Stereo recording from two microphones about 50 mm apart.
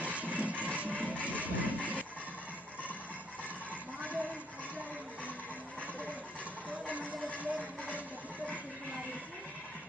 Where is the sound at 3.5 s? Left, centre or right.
Right.